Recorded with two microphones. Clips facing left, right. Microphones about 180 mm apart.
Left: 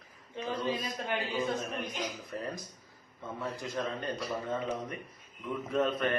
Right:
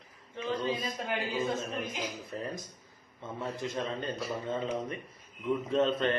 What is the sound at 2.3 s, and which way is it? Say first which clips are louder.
Speech: right 1 dB; 25° right (ahead or behind).